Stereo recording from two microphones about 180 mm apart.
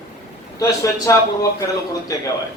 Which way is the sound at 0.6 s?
20° left (ahead or behind).